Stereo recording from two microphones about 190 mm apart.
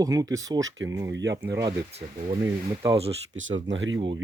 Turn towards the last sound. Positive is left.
turn(degrees=-80)